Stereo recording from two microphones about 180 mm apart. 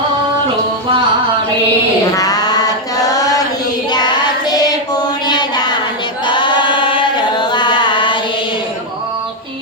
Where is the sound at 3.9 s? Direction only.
25° left (ahead or behind).